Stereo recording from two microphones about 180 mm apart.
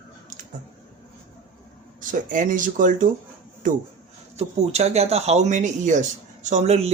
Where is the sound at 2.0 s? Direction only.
45° right (ahead or behind).